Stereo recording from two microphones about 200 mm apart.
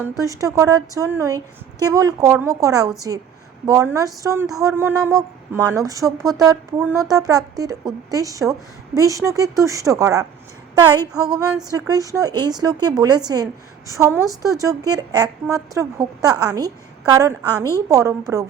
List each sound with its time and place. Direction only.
0.0 s speech: 15° right (ahead or behind)
11.7 s a woman's voice: 20° right (ahead or behind)